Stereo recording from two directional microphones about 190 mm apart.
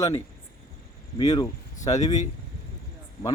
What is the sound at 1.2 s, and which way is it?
Speech, 20° left (ahead or behind).